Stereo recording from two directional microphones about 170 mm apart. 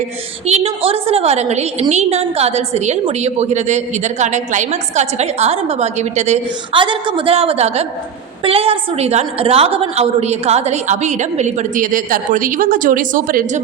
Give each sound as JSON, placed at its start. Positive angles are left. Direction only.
{"t": 0.4, "sound": "a woman's voice", "side_deg": -35}
{"t": 6.7, "sound": "a woman's voice", "side_deg": -30}